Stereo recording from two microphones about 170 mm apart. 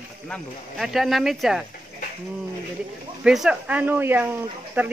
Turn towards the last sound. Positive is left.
turn(degrees=-10)  # may be behind; listen again after turning